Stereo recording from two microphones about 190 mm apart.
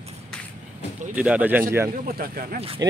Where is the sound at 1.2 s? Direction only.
5° right (ahead or behind).